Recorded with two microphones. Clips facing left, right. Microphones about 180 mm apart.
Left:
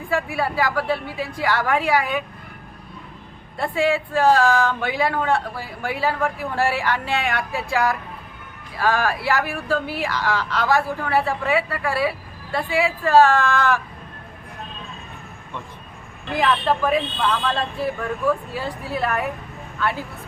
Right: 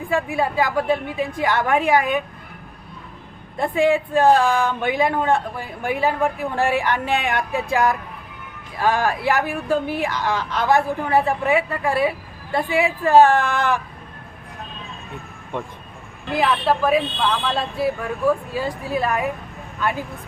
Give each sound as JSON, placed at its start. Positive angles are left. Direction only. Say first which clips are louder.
{"t": 0.1, "sound": "speech", "louder": "right 2 dB", "side_deg": -20}
{"t": 3.6, "sound": "speech", "louder": "right 3 dB", "side_deg": -20}
{"t": 16.4, "sound": "speech", "louder": "right 1 dB", "side_deg": -10}